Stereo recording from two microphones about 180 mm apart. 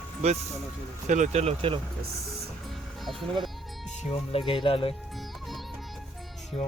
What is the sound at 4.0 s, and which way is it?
Speech, 35° left (ahead or behind).